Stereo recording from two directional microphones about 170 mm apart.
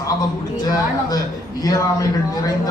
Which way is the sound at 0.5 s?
25° left (ahead or behind).